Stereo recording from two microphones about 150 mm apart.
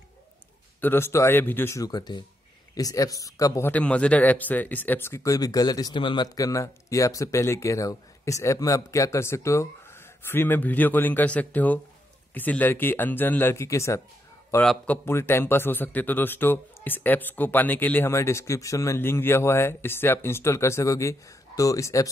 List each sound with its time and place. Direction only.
0.7 s speech: 15° left (ahead or behind)
14.6 s speech: 5° left (ahead or behind)
15.0 s speech: 15° left (ahead or behind)